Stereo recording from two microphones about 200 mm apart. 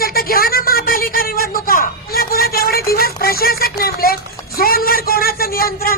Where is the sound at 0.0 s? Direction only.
50° left (ahead or behind).